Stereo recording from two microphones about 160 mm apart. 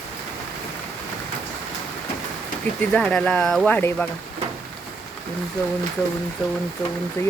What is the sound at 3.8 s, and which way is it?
Speech, 15° left (ahead or behind).